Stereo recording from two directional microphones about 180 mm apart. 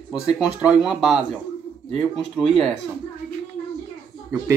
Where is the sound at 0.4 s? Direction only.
5° right (ahead or behind).